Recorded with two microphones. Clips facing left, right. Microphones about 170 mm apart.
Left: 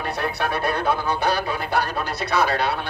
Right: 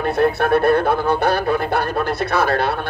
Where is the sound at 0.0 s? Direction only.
55° right (ahead or behind).